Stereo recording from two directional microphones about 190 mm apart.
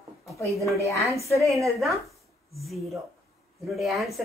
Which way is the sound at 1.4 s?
Centre (ahead or behind).